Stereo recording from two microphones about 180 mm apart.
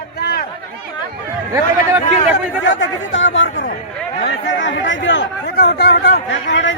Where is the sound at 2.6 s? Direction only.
90° left.